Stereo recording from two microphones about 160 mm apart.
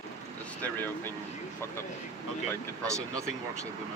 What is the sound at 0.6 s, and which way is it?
Speech, 10° left (ahead or behind).